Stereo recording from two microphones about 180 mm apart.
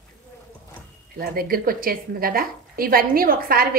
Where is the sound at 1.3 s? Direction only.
55° right (ahead or behind).